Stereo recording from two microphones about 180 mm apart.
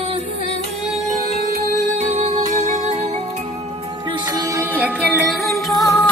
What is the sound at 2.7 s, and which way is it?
Music, 40° right (ahead or behind).